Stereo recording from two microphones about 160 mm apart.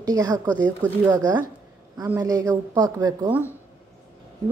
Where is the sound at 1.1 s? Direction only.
25° right (ahead or behind).